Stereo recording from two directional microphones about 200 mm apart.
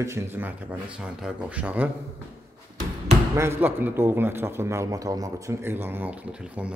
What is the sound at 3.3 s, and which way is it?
A man's voice, 10° right (ahead or behind).